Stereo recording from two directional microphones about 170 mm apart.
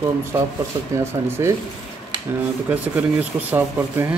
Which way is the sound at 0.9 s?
15° right (ahead or behind).